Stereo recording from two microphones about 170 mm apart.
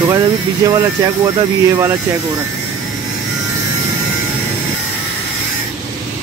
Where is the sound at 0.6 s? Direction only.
20° right (ahead or behind).